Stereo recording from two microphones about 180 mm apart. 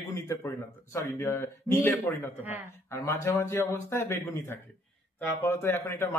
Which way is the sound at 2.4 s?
10° right (ahead or behind).